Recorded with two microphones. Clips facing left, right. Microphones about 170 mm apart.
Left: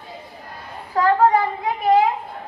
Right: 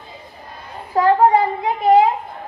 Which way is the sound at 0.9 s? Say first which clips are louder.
Right 3 dB; 25° right (ahead or behind).